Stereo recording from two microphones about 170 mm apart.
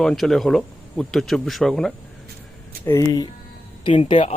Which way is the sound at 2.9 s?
20° left (ahead or behind).